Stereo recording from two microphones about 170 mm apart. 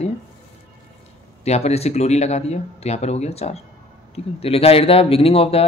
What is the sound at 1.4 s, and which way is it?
A man's voice, 40° left (ahead or behind).